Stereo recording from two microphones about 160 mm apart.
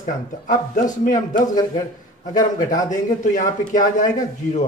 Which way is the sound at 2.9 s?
50° left (ahead or behind).